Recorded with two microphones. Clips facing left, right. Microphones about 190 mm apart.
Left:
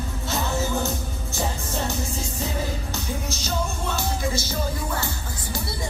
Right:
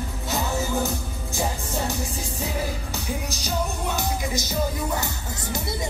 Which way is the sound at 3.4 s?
15° right (ahead or behind).